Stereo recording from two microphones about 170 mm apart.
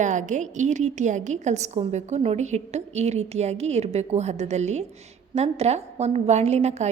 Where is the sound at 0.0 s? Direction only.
45° right (ahead or behind).